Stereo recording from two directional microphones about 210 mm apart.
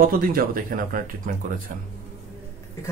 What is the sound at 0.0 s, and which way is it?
Speech, 45° right (ahead or behind).